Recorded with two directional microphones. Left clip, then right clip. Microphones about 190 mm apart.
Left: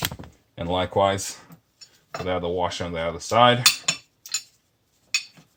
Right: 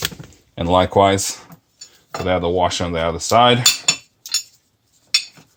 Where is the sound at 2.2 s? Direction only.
45° right (ahead or behind).